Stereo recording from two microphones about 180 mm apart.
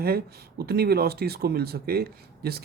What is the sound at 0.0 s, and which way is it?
Speech, 60° right (ahead or behind).